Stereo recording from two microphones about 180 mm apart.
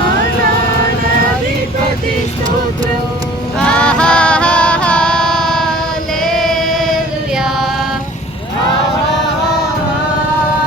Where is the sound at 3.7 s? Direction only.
5° left (ahead or behind).